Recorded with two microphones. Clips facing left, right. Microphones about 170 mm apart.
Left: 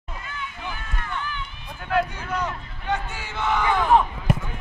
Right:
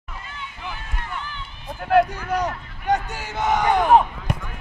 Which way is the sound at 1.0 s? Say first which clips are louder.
Left 3 dB; 30° right (ahead or behind).